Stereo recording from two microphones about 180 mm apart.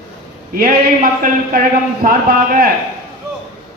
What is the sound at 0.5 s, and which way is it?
A man's voice, 50° right (ahead or behind).